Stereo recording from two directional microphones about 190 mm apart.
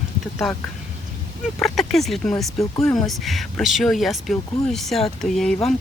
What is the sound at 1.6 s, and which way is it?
Speech, centre (ahead or behind).